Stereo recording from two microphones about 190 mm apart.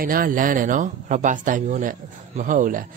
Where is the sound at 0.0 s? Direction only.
50° right (ahead or behind).